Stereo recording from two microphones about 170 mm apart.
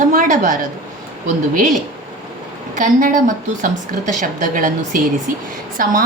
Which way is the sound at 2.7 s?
50° right (ahead or behind).